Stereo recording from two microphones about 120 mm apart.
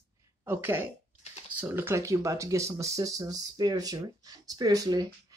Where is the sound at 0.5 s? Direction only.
20° right (ahead or behind).